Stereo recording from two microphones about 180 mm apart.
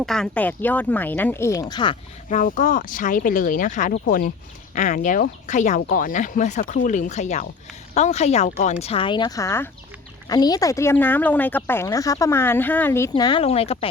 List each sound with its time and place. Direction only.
0.0 s a woman's voice: 5° left (ahead or behind); by 2.0 s 25° left (ahead or behind)
2.3 s a woman's voice: 45° left (ahead or behind)